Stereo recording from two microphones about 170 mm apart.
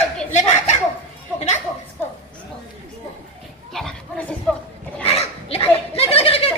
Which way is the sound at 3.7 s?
5° left (ahead or behind).